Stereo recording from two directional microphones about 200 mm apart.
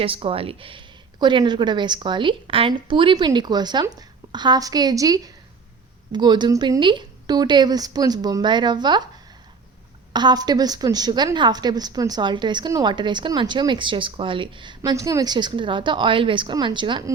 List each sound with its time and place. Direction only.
0.0 s a woman's voice: 30° right (ahead or behind)
10.1 s a woman's voice: 20° right (ahead or behind)